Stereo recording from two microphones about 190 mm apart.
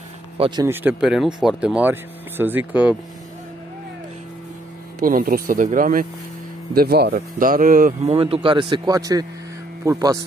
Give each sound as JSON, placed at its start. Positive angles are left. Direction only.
{"t": 0.7, "sound": "speech", "side_deg": -10}
{"t": 5.0, "sound": "speech", "side_deg": -45}
{"t": 8.1, "sound": "a man's voice", "side_deg": -30}